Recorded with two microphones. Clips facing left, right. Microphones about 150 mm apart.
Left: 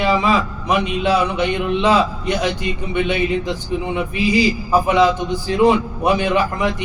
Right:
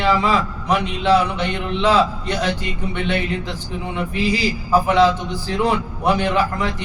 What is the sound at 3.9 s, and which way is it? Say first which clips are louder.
A man's voice: left 3 dB; 15° left (ahead or behind).